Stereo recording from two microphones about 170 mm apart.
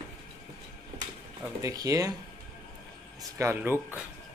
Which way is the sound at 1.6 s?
20° right (ahead or behind).